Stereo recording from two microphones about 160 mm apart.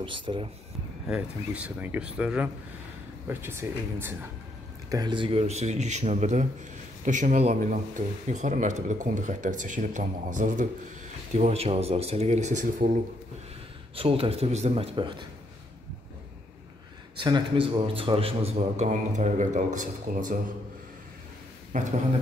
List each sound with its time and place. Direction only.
0.0 s speech: 30° right (ahead or behind)
1.0 s speech: 5° right (ahead or behind)
4.8 s speech: 25° right (ahead or behind); by 10.7 s 55° right (ahead or behind)
11.3 s speech: 40° right (ahead or behind)
13.9 s speech: 35° right (ahead or behind)
15.0 s a man's voice: 30° right (ahead or behind)
17.2 s speech: 30° right (ahead or behind); by 20.3 s 55° right (ahead or behind)
21.7 s speech: 50° right (ahead or behind)